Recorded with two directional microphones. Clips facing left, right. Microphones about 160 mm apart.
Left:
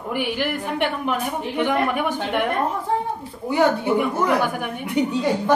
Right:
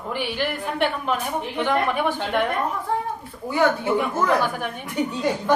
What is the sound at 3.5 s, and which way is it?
A woman's voice, 15° left (ahead or behind).